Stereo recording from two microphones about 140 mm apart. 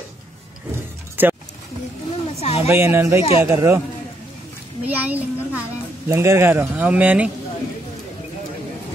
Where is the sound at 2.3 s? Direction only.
50° left (ahead or behind).